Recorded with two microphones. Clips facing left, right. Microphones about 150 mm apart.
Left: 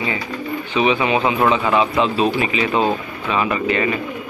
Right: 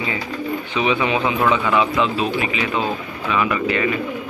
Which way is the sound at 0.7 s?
20° left (ahead or behind).